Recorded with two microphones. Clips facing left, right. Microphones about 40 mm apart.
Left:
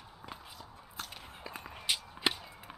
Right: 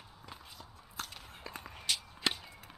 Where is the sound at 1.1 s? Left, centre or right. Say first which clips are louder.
Left 1 dB; centre.